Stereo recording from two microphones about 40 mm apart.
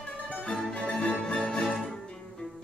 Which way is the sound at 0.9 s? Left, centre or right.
Left.